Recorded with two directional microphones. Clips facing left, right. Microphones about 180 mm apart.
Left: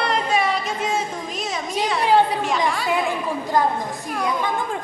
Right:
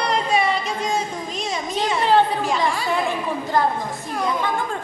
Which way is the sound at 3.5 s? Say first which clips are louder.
Even; 15° left (ahead or behind).